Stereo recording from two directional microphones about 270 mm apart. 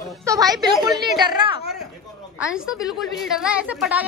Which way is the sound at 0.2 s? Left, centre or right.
Centre.